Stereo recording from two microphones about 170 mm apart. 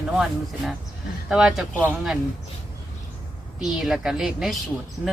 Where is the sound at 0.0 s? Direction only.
Centre (ahead or behind).